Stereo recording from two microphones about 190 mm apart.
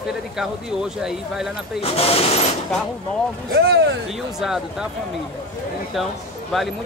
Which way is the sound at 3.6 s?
60° right (ahead or behind).